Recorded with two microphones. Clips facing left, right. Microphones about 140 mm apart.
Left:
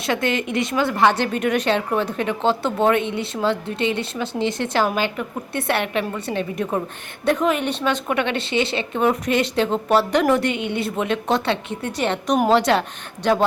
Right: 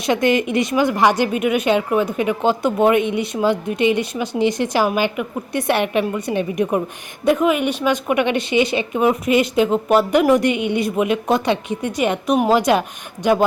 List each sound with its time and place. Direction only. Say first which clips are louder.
0.0 s a woman's voice: right 5 dB; 15° right (ahead or behind)